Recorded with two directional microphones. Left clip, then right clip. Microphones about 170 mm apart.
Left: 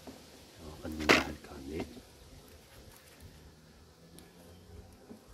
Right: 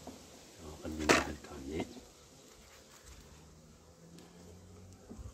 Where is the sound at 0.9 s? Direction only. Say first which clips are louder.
Left 3 dB; 35° left (ahead or behind).